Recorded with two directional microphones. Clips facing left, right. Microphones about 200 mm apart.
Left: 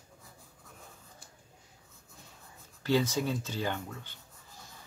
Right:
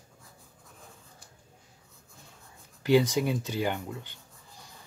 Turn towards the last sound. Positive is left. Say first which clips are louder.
# right 4 dB
turn(degrees=-15)  # may be behind; listen again after turning